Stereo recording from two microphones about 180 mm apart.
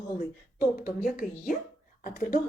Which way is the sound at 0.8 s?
50° left (ahead or behind).